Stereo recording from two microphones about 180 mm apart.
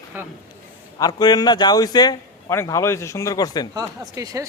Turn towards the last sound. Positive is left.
turn(degrees=-20)  # may be behind; listen again after turning